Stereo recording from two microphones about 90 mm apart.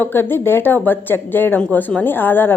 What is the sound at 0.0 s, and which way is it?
A woman's voice, 25° left (ahead or behind).